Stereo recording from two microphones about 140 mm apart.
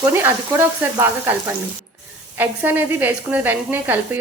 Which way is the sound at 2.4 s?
15° right (ahead or behind).